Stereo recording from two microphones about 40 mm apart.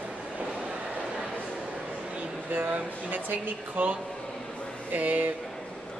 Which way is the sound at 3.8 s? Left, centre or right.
Right.